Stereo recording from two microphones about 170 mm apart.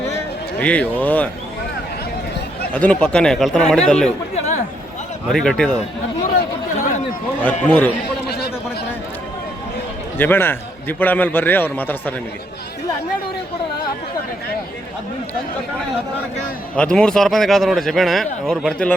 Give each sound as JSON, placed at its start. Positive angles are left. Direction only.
{"t": 0.6, "sound": "a man's voice", "side_deg": 10}
{"t": 2.7, "sound": "a man's voice", "side_deg": 5}
{"t": 4.4, "sound": "chatter", "side_deg": 40}
{"t": 5.3, "sound": "a man's voice", "side_deg": 0}
{"t": 6.8, "sound": "a man's voice", "side_deg": 55}
{"t": 7.4, "sound": "a man's voice", "side_deg": 10}
{"t": 10.2, "sound": "a man's voice", "side_deg": 10}
{"t": 16.7, "sound": "a man's voice", "side_deg": 5}